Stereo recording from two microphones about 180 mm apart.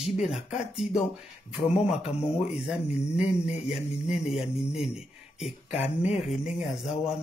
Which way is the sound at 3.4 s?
35° left (ahead or behind).